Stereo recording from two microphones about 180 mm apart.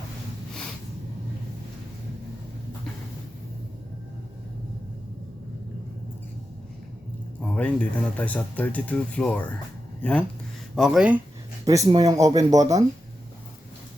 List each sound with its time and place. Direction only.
7.4 s speech: 5° left (ahead or behind)
11.6 s speech: 20° right (ahead or behind)